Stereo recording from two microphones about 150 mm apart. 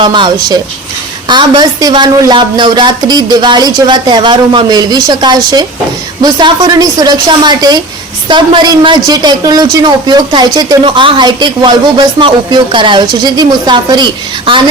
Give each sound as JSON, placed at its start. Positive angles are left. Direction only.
{"t": 0.0, "sound": "a woman's voice", "side_deg": -30}